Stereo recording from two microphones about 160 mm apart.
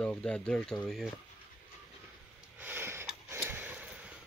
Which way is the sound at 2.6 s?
15° right (ahead or behind).